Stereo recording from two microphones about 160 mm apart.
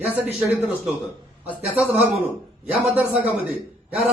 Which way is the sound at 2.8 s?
10° right (ahead or behind).